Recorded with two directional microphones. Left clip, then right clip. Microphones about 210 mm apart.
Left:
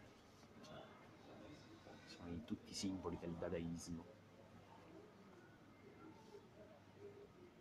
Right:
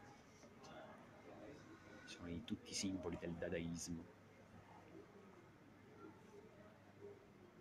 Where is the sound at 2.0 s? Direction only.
Centre (ahead or behind).